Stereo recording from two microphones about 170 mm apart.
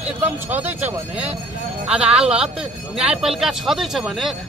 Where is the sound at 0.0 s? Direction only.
10° right (ahead or behind).